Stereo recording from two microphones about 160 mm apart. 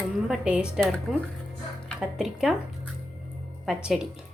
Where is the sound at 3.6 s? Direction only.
5° right (ahead or behind).